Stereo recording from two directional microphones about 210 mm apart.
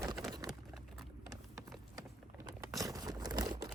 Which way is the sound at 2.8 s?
15° right (ahead or behind).